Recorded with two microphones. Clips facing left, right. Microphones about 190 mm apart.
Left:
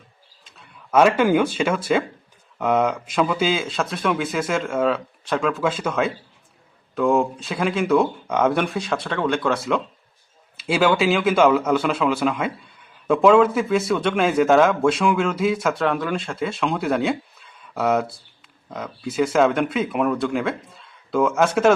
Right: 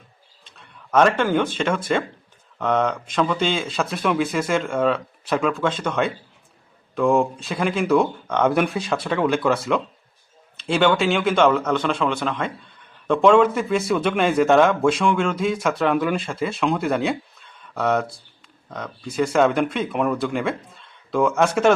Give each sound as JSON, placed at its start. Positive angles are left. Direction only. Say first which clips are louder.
{"t": 0.4, "sound": "speech", "louder": "even", "side_deg": 0}